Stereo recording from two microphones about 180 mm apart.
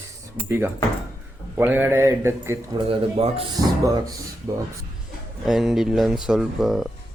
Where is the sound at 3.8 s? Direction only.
20° right (ahead or behind).